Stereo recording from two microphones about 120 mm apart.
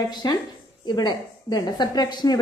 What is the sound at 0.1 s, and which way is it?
A woman's voice, 35° left (ahead or behind).